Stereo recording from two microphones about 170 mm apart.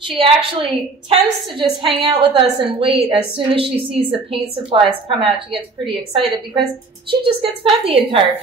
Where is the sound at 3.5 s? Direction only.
35° right (ahead or behind).